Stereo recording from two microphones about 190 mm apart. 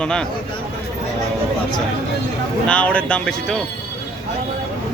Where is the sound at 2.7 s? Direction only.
5° left (ahead or behind).